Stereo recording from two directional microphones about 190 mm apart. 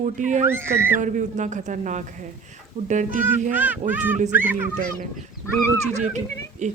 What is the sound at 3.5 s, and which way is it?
Speech, 10° right (ahead or behind).